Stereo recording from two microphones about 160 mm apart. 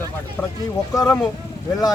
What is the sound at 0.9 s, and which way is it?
Speech, 20° left (ahead or behind).